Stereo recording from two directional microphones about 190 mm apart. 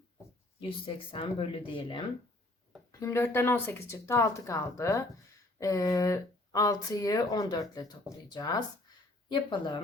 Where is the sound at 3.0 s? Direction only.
15° left (ahead or behind).